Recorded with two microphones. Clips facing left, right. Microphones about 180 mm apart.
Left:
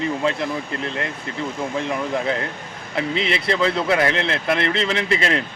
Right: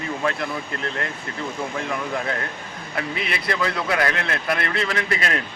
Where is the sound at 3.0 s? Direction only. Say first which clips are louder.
Left 5 dB; 25° left (ahead or behind).